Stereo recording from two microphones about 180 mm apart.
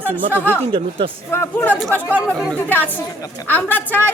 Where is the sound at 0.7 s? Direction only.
30° right (ahead or behind).